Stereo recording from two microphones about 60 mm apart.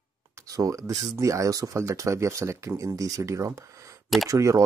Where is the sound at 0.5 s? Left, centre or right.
Right.